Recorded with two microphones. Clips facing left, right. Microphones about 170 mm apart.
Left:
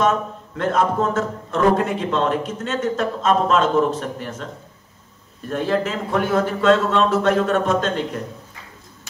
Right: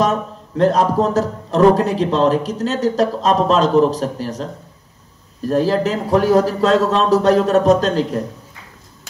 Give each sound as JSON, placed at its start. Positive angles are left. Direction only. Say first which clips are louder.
{"t": 0.6, "sound": "a man's voice", "louder": "right 5 dB", "side_deg": -35}